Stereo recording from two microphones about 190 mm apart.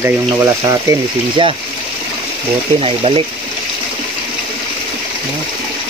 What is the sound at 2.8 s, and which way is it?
Speech, 30° right (ahead or behind).